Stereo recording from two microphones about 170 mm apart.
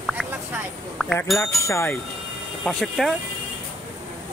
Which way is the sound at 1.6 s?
15° left (ahead or behind).